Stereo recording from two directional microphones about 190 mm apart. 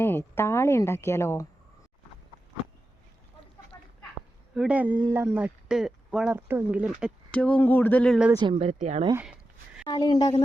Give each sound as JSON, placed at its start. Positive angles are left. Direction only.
{"t": 0.0, "sound": "speech", "side_deg": 10}
{"t": 3.7, "sound": "a sound", "side_deg": 15}
{"t": 4.5, "sound": "speech", "side_deg": -5}
{"t": 7.3, "sound": "speech", "side_deg": 5}
{"t": 8.3, "sound": "speech", "side_deg": -20}
{"t": 8.5, "sound": "speech", "side_deg": -35}
{"t": 9.1, "sound": "a sound", "side_deg": -5}
{"t": 9.8, "sound": "a woman's voice", "side_deg": 20}